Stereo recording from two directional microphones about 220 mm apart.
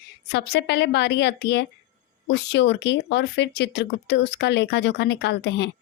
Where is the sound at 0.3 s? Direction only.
50° left (ahead or behind).